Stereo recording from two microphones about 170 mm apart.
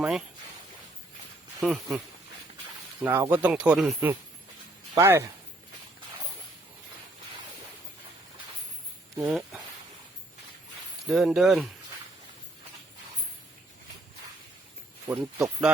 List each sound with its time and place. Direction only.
1.5 s speech: centre (ahead or behind)
3.0 s speech: 15° right (ahead or behind)
4.9 s speech: 15° right (ahead or behind)
9.2 s speech: centre (ahead or behind)
11.0 s speech: centre (ahead or behind)
15.0 s speech: 10° right (ahead or behind)